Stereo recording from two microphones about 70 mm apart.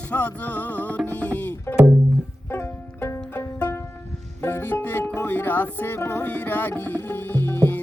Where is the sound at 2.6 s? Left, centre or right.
Left.